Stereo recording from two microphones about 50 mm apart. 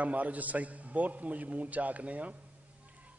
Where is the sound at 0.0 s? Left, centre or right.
Right.